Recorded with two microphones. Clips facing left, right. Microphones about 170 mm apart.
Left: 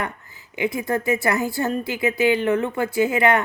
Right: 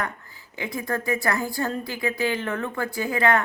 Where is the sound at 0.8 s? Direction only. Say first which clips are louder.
Left 2 dB; 20° left (ahead or behind).